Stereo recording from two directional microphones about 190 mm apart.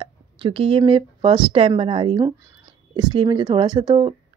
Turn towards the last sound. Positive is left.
turn(degrees=-25)  # may be behind; listen again after turning